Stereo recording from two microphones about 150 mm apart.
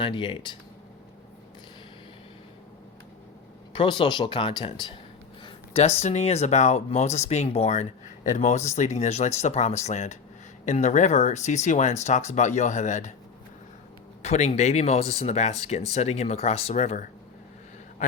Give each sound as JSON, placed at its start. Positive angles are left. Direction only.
{"t": 0.0, "sound": "speech", "side_deg": 30}
{"t": 3.7, "sound": "speech", "side_deg": 30}
{"t": 5.4, "sound": "speech", "side_deg": 40}
{"t": 14.2, "sound": "speech", "side_deg": 45}